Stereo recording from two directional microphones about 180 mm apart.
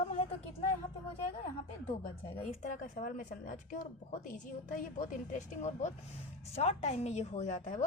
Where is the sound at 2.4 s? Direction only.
45° left (ahead or behind).